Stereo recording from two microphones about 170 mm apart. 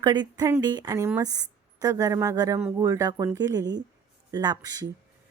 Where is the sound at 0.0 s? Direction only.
25° right (ahead or behind).